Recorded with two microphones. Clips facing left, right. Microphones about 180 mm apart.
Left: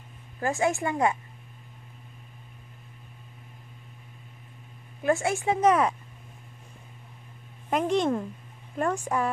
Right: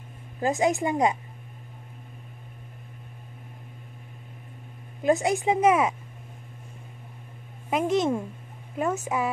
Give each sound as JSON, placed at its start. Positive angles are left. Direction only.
{"t": 0.4, "sound": "a woman's voice", "side_deg": -20}
{"t": 5.0, "sound": "a woman's voice", "side_deg": -15}
{"t": 7.7, "sound": "a woman's voice", "side_deg": -5}